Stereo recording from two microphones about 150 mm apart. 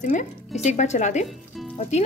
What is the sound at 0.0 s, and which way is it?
Speech, 55° left (ahead or behind).